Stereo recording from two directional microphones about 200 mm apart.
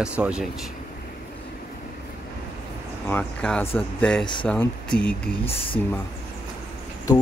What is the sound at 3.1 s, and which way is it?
Speech, 5° left (ahead or behind).